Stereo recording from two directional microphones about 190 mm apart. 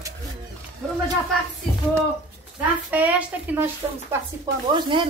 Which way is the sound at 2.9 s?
10° right (ahead or behind).